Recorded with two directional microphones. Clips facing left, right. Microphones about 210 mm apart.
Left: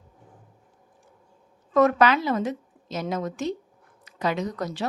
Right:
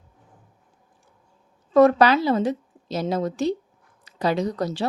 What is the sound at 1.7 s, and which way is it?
A woman's voice, 30° right (ahead or behind).